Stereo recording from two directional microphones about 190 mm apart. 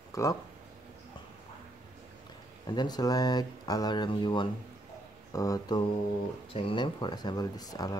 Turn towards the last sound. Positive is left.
turn(degrees=20)  # may be behind; listen again after turning